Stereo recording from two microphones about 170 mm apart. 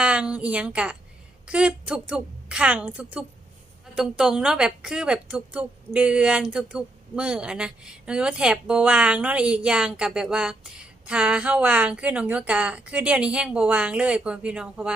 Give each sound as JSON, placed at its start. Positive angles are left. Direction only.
{"t": 0.0, "sound": "a woman's voice", "side_deg": -5}